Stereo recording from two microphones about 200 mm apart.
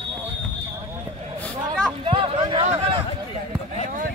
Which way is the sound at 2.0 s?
25° right (ahead or behind).